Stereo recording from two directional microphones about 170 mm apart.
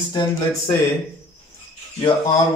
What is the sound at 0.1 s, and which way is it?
Speech, 20° left (ahead or behind).